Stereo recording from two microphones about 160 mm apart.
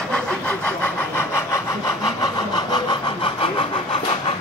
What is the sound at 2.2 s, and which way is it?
Vehicle, 25° left (ahead or behind).